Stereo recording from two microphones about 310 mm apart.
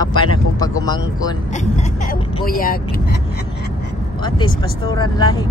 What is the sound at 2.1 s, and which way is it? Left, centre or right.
Speech, left.